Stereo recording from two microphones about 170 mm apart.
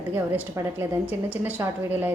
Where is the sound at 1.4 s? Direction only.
10° right (ahead or behind).